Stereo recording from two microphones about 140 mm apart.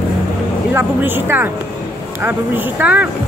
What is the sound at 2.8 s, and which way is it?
Speech, 10° right (ahead or behind).